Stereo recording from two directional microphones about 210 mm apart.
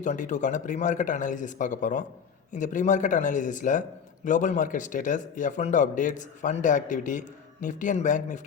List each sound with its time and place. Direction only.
0.0 s a man's voice: 35° left (ahead or behind)